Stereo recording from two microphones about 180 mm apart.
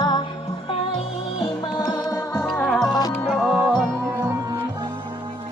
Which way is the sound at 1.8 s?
20° left (ahead or behind).